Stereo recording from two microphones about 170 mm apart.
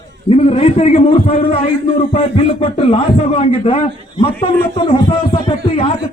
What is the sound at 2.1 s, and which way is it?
A man's voice, 30° left (ahead or behind).